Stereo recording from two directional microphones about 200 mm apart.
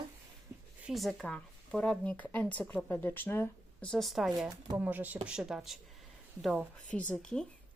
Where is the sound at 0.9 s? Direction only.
Centre (ahead or behind).